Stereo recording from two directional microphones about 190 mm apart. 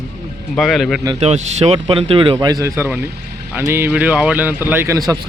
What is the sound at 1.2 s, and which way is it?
Speech, 35° right (ahead or behind).